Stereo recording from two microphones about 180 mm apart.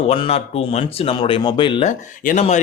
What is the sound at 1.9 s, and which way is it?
Speech, 45° left (ahead or behind).